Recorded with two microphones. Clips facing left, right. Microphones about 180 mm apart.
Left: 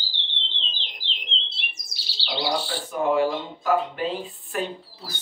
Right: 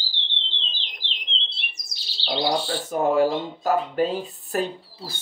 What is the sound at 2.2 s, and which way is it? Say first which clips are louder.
Speech: right 3 dB; 40° right (ahead or behind).